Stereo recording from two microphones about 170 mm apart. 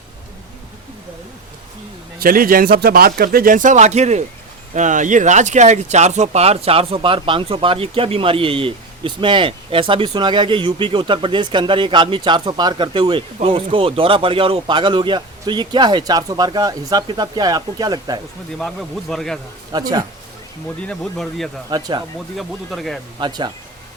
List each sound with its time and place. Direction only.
2.1 s speech: 60° right (ahead or behind); by 18.2 s 25° right (ahead or behind)
18.6 s speech: centre (ahead or behind)
19.7 s speech: 25° right (ahead or behind)
20.8 s speech: 5° left (ahead or behind)
21.7 s speech: 25° right (ahead or behind)
22.4 s speech: centre (ahead or behind)
23.2 s speech: 25° right (ahead or behind)